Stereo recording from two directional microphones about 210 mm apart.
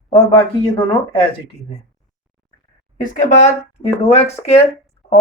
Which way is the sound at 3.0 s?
35° left (ahead or behind).